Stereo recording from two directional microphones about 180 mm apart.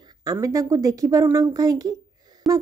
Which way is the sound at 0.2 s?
20° right (ahead or behind).